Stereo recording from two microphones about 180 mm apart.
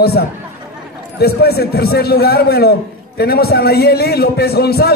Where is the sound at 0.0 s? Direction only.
60° left (ahead or behind).